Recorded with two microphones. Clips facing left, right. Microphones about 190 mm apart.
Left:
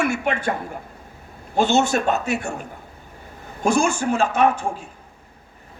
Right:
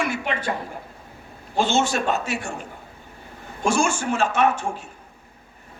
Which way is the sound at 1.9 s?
45° left (ahead or behind).